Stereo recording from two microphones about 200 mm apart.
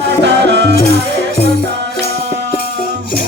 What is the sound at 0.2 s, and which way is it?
Music, 60° right (ahead or behind).